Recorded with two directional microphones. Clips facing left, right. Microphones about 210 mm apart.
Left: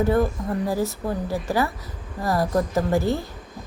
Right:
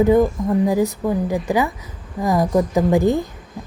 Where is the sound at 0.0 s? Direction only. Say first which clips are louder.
Right 6 dB; 15° right (ahead or behind).